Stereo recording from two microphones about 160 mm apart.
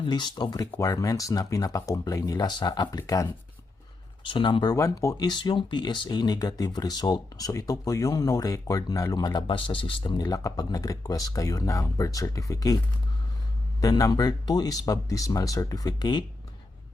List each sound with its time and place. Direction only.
0.0 s speech: 30° left (ahead or behind)
4.3 s speech: 30° left (ahead or behind)
13.8 s speech: 25° left (ahead or behind)